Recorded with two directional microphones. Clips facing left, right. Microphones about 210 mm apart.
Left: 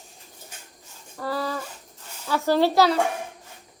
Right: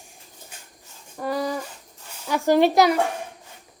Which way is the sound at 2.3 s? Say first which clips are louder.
Right 3 dB; 15° right (ahead or behind).